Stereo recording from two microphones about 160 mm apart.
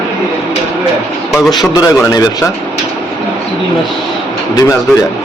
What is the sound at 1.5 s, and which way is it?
Speech, 25° left (ahead or behind).